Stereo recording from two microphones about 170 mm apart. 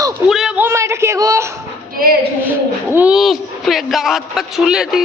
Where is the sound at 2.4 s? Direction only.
10° right (ahead or behind).